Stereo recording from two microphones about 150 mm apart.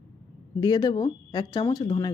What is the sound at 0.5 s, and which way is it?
A woman's voice, 25° left (ahead or behind).